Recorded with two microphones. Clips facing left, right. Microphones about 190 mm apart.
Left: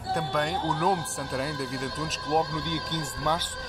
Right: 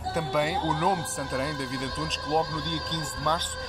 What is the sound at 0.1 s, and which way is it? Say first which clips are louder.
Speech: right 1 dB; 5° right (ahead or behind).